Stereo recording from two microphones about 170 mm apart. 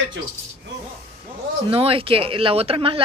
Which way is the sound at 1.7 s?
35° right (ahead or behind).